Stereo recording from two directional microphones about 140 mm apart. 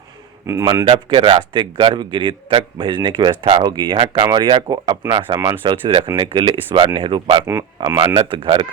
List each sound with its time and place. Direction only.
0.4 s speech: 20° right (ahead or behind)
0.9 s a man's voice: 40° right (ahead or behind)